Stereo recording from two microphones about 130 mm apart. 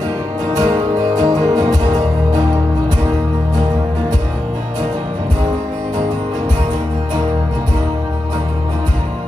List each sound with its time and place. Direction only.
1.1 s music: 30° right (ahead or behind)